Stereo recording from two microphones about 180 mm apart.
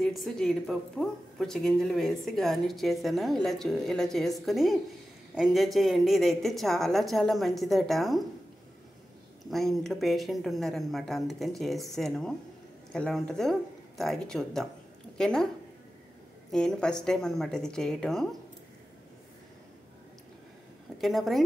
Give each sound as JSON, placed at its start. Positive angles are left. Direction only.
{"t": 0.0, "sound": "speech", "side_deg": 0}
{"t": 9.5, "sound": "a woman's voice", "side_deg": 0}
{"t": 16.5, "sound": "speech", "side_deg": 5}
{"t": 21.0, "sound": "speech", "side_deg": 0}